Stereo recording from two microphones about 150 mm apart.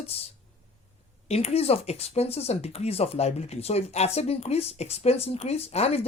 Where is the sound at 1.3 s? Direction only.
40° left (ahead or behind).